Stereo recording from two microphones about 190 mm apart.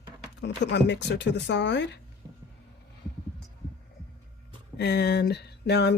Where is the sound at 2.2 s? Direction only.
20° right (ahead or behind).